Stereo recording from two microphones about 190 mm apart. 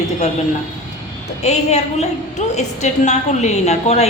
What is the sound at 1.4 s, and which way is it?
A woman's voice, 35° left (ahead or behind).